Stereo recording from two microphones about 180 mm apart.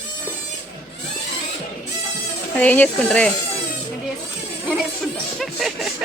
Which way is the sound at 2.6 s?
10° left (ahead or behind).